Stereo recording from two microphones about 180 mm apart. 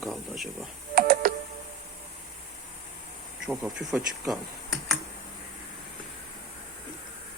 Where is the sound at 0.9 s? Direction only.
55° right (ahead or behind).